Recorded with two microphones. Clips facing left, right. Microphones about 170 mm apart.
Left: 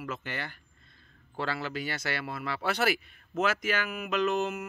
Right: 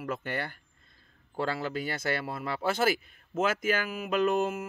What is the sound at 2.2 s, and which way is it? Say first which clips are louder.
Mantra: right 1 dB; 30° right (ahead or behind).